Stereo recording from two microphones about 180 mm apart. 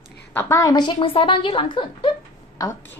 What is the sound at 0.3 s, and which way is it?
A woman's voice, 15° left (ahead or behind).